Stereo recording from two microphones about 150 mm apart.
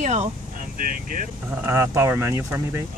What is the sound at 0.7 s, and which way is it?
Speech, 65° right (ahead or behind).